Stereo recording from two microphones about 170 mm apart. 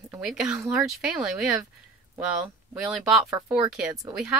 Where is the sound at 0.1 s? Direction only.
5° right (ahead or behind).